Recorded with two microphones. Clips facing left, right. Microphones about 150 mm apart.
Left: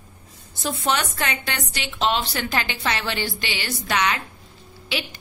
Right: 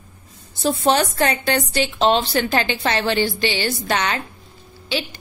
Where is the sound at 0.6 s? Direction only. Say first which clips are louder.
Right 6 dB; 35° right (ahead or behind).